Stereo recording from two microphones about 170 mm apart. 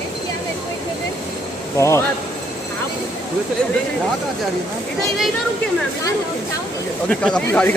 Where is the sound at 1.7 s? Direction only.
15° left (ahead or behind).